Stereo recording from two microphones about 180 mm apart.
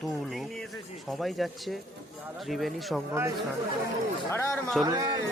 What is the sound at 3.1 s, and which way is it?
Speech, 15° right (ahead or behind).